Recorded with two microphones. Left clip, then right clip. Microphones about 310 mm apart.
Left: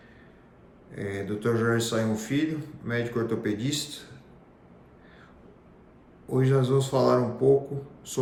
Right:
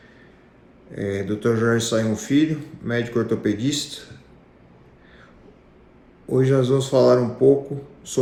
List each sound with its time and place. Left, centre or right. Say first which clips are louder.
0.9 s a man's voice: right 7 dB; centre
6.3 s a man's voice: right 6 dB; centre